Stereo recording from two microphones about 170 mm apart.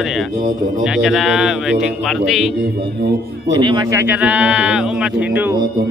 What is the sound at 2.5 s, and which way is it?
A man's voice, 75° right (ahead or behind).